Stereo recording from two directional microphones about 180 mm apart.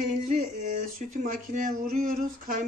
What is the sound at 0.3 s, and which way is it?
Speech, 45° right (ahead or behind).